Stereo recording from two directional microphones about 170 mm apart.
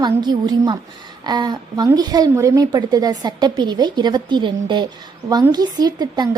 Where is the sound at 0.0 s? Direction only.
25° right (ahead or behind).